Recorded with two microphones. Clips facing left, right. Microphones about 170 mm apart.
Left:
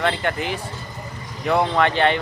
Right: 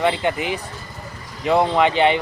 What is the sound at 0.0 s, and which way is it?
Speech, 15° right (ahead or behind).